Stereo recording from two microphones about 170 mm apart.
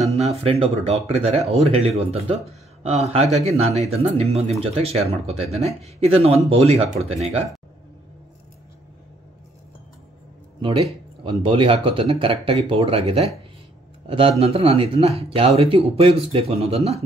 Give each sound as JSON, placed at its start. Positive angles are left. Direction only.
{"t": 0.2, "sound": "speech", "side_deg": -35}
{"t": 11.2, "sound": "a man's voice", "side_deg": -30}